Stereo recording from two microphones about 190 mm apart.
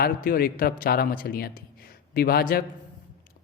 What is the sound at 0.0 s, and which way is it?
Speech, 50° left (ahead or behind).